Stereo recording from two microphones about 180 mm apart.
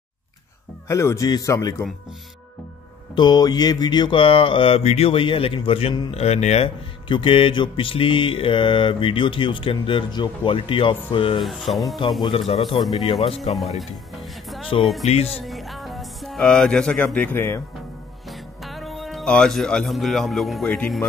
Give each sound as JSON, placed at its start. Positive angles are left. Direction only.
{"t": 0.8, "sound": "speech", "side_deg": 15}
{"t": 3.2, "sound": "mantra", "side_deg": 25}
{"t": 11.7, "sound": "speech", "side_deg": 0}
{"t": 12.2, "sound": "speech", "side_deg": 30}
{"t": 13.7, "sound": "music", "side_deg": 0}
{"t": 15.0, "sound": "speech", "side_deg": 35}
{"t": 15.4, "sound": "music", "side_deg": 0}
{"t": 18.2, "sound": "speech", "side_deg": 0}